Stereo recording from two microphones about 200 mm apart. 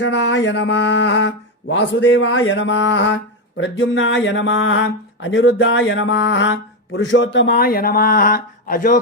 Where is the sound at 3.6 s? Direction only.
70° left (ahead or behind).